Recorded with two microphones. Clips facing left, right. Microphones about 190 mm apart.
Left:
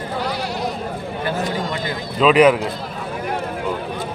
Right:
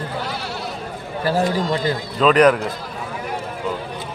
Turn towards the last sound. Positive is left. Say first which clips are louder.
# left 1 dB
turn(degrees=5)  # may be behind; listen again after turning